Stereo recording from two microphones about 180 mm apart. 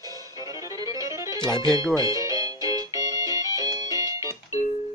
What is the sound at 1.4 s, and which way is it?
Speech, 25° left (ahead or behind).